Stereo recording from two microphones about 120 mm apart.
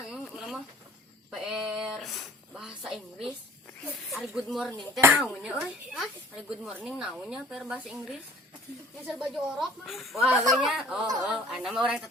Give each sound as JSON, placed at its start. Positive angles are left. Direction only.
{"t": 0.0, "sound": "chicken", "side_deg": -5}
{"t": 1.3, "sound": "a sound", "side_deg": -5}
{"t": 4.1, "sound": "speech", "side_deg": 0}
{"t": 4.9, "sound": "speech", "side_deg": -20}
{"t": 5.2, "sound": "speech", "side_deg": -5}